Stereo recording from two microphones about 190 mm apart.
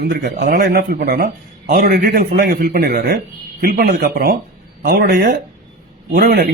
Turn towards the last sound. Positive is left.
turn(degrees=-50)  # may be behind; listen again after turning